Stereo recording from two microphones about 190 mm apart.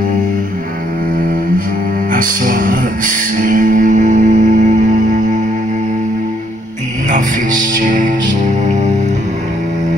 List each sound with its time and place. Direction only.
2.1 s music: 45° right (ahead or behind)
7.1 s music: 45° right (ahead or behind)